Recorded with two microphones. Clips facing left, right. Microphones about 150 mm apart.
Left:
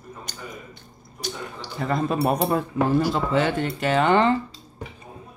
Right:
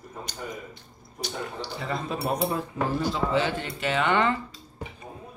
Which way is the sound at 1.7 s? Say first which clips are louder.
Left 9 dB; 50° left (ahead or behind).